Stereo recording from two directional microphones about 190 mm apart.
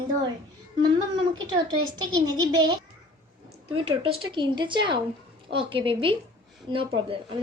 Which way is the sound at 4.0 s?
25° right (ahead or behind).